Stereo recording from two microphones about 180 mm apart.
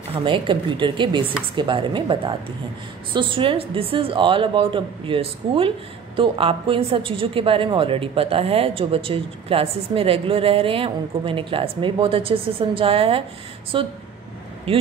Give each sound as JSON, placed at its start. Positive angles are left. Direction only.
{"t": 0.1, "sound": "a woman's voice", "side_deg": -25}